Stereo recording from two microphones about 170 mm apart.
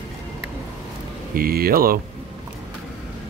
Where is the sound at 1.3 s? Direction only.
60° right (ahead or behind).